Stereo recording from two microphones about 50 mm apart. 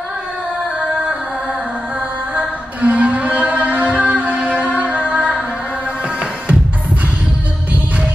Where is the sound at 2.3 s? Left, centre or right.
Right.